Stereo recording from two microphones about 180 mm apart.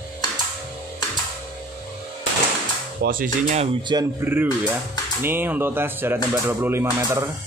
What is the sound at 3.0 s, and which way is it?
Speech, 50° right (ahead or behind).